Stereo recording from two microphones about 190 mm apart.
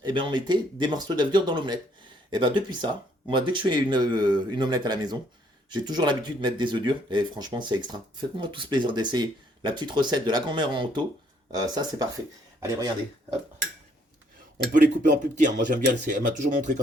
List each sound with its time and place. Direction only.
0.0 s speech: 25° right (ahead or behind)
15.4 s speech: 45° right (ahead or behind)